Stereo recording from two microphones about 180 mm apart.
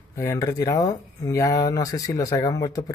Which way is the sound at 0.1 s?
15° left (ahead or behind).